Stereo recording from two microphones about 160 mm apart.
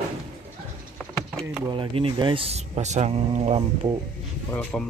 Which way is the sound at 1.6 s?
35° right (ahead or behind).